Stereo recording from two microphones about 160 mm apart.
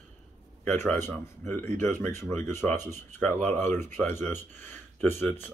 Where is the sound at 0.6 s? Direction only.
10° left (ahead or behind).